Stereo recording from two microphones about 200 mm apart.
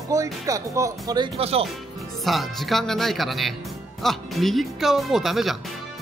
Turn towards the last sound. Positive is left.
turn(degrees=0)  # may be behind; listen again after turning